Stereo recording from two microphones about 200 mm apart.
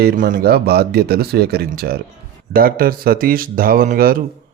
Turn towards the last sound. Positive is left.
turn(degrees=-45)  # may be behind; listen again after turning